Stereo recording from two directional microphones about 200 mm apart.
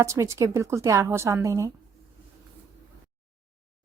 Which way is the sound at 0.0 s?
15° right (ahead or behind).